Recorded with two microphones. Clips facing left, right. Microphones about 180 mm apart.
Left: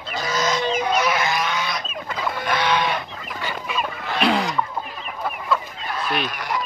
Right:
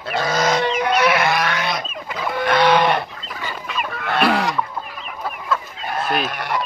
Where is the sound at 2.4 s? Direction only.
65° right (ahead or behind).